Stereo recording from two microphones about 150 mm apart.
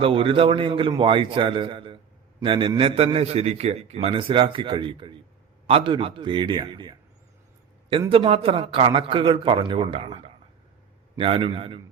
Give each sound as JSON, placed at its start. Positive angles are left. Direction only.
{"t": 0.0, "sound": "a man's voice", "side_deg": -35}
{"t": 8.1, "sound": "a man's voice", "side_deg": -35}